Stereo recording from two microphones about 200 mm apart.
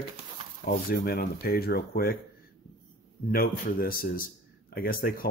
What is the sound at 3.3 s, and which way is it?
Speech, 45° left (ahead or behind).